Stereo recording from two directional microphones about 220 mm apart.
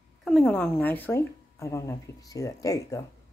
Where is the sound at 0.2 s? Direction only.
Centre (ahead or behind).